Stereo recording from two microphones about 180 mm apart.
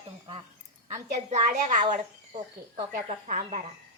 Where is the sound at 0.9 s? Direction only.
40° right (ahead or behind).